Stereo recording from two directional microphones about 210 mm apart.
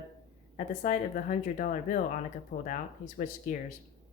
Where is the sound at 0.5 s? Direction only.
35° left (ahead or behind).